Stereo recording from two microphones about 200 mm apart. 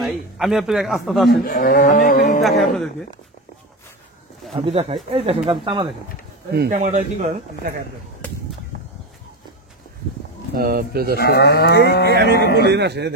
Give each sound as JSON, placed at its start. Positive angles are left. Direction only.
{"t": 0.0, "sound": "a man's voice", "side_deg": 0}
{"t": 1.3, "sound": "speech", "side_deg": 45}
{"t": 4.6, "sound": "speech", "side_deg": -30}
{"t": 5.5, "sound": "speech", "side_deg": -20}
{"t": 6.7, "sound": "speech", "side_deg": -40}
{"t": 10.5, "sound": "speech", "side_deg": -50}
{"t": 11.1, "sound": "speech", "side_deg": 50}
{"t": 12.1, "sound": "speech", "side_deg": -55}
{"t": 12.4, "sound": "speech", "side_deg": 55}
{"t": 12.6, "sound": "speech", "side_deg": -55}